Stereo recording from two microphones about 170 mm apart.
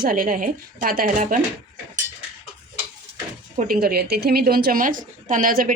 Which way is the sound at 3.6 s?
60° right (ahead or behind).